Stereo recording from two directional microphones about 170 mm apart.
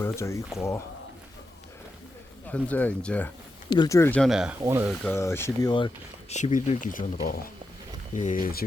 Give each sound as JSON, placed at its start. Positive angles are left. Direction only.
{"t": 0.0, "sound": "speech", "side_deg": 15}
{"t": 2.5, "sound": "speech", "side_deg": 10}
{"t": 3.7, "sound": "speech", "side_deg": 20}
{"t": 4.2, "sound": "speech", "side_deg": -5}
{"t": 4.6, "sound": "speech", "side_deg": -15}
{"t": 5.1, "sound": "speech", "side_deg": 15}
{"t": 6.3, "sound": "speech", "side_deg": 45}